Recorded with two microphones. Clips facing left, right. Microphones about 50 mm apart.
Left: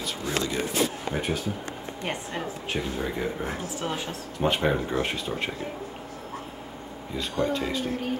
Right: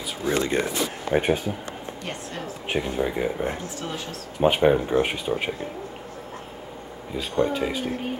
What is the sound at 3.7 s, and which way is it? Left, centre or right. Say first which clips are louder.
Speech: left 1 dB; centre.